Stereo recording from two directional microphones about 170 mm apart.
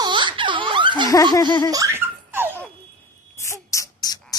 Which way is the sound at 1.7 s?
15° right (ahead or behind).